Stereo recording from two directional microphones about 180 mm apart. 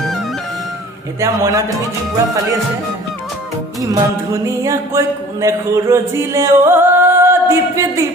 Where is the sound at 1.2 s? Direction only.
20° right (ahead or behind).